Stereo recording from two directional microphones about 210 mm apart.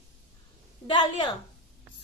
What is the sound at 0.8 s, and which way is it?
Speech, 20° left (ahead or behind).